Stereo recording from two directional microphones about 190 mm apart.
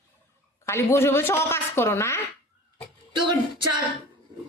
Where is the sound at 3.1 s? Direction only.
25° right (ahead or behind).